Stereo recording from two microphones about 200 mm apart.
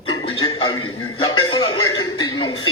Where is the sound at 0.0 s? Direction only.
25° left (ahead or behind).